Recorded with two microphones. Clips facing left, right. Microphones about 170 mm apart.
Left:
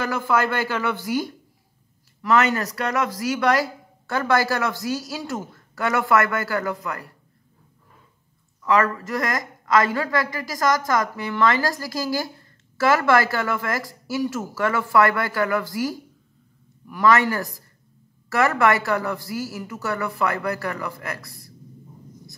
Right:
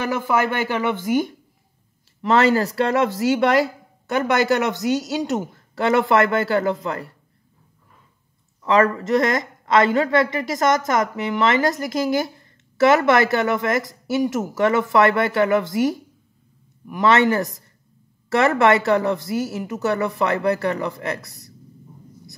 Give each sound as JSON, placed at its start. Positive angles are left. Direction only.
{"t": 0.0, "sound": "speech", "side_deg": -20}
{"t": 2.2, "sound": "speech", "side_deg": -30}
{"t": 8.6, "sound": "speech", "side_deg": -25}